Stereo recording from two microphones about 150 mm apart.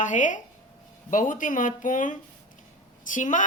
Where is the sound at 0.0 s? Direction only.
55° left (ahead or behind).